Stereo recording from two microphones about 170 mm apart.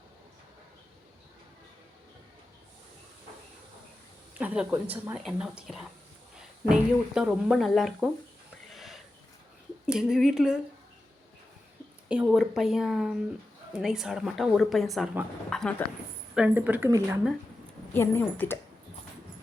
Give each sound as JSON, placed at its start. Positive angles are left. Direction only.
{"t": 4.4, "sound": "a woman's voice", "side_deg": -10}
{"t": 8.7, "sound": "a sound", "side_deg": 0}
{"t": 9.8, "sound": "speech", "side_deg": -5}
{"t": 12.0, "sound": "a woman's voice", "side_deg": -5}
{"t": 16.3, "sound": "speech", "side_deg": -10}
{"t": 17.9, "sound": "speech", "side_deg": 15}